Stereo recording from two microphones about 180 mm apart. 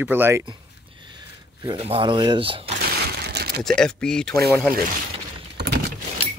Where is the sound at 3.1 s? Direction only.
65° right (ahead or behind).